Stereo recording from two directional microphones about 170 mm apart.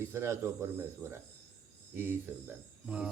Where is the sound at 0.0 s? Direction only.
15° right (ahead or behind).